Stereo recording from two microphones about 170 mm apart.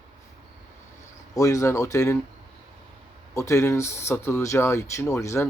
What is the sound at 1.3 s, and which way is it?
Speech, 20° left (ahead or behind).